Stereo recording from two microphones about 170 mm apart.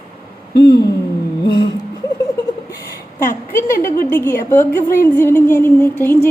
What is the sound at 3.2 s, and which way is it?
A woman's voice, 15° left (ahead or behind).